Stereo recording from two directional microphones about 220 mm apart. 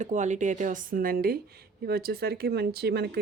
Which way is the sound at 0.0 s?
35° right (ahead or behind).